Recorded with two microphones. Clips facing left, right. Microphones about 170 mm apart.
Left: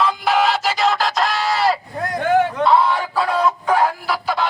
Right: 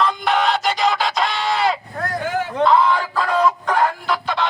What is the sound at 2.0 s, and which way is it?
Vehicle, 20° left (ahead or behind).